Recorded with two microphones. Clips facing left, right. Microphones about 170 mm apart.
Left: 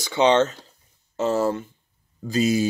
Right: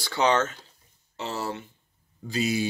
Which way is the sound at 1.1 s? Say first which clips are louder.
Left 10 dB; 45° left (ahead or behind).